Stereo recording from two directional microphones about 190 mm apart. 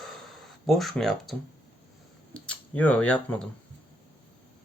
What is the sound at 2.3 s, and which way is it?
Speech, 5° left (ahead or behind).